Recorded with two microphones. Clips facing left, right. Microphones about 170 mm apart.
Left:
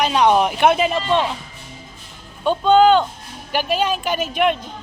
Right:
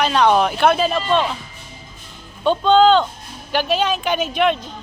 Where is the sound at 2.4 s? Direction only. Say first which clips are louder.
Even; 10° left (ahead or behind).